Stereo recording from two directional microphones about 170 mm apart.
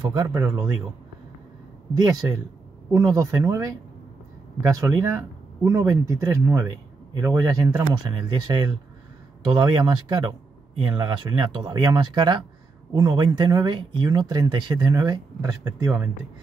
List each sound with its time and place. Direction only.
0.0 s speech: 25° right (ahead or behind)
2.0 s speech: 20° right (ahead or behind)